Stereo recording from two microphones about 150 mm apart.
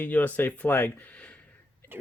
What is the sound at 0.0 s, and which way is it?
Speech, 10° left (ahead or behind).